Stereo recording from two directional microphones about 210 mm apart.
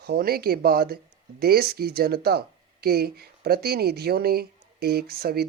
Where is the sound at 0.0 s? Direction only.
50° right (ahead or behind).